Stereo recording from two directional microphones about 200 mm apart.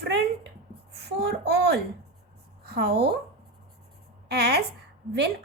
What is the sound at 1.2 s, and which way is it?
A woman's voice, 55° right (ahead or behind).